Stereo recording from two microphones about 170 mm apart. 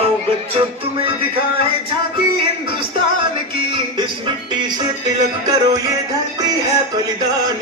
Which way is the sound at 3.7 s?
30° right (ahead or behind).